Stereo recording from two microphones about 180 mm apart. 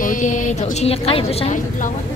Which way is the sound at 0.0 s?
45° left (ahead or behind).